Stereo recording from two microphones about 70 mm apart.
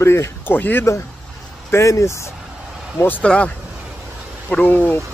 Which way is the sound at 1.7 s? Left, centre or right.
Left.